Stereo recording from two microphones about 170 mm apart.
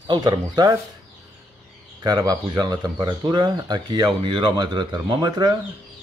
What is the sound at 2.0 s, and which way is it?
Speech, 25° right (ahead or behind).